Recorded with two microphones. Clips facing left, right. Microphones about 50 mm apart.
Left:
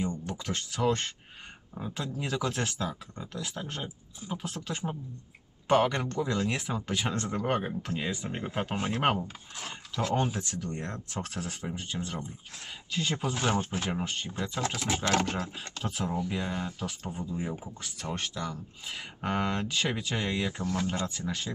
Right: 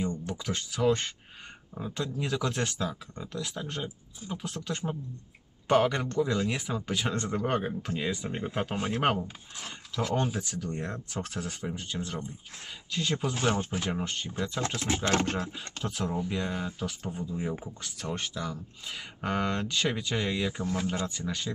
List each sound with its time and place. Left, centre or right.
0.0 s speech: centre
14.7 s speech: right
15.0 s a sound: right
15.8 s speech: centre
20.7 s speech: centre
21.1 s speech: centre